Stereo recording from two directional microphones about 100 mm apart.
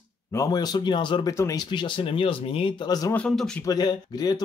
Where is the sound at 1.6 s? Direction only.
55° left (ahead or behind).